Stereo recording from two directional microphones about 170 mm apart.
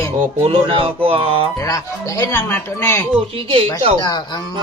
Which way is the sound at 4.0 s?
25° left (ahead or behind).